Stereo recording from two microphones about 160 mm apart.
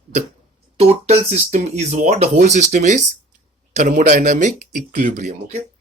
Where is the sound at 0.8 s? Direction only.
40° right (ahead or behind).